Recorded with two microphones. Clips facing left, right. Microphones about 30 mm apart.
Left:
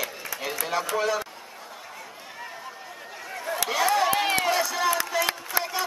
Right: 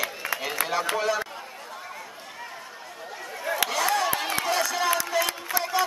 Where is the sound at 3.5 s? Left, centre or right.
Centre.